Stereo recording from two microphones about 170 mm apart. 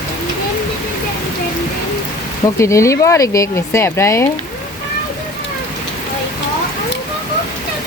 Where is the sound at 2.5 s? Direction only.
15° left (ahead or behind).